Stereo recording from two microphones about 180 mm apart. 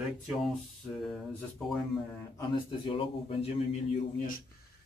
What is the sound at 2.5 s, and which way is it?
A man's voice, 30° left (ahead or behind).